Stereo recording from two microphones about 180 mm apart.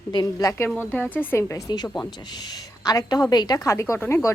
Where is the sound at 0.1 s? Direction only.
20° left (ahead or behind).